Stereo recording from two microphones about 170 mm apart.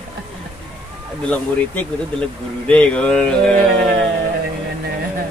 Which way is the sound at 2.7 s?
5° left (ahead or behind).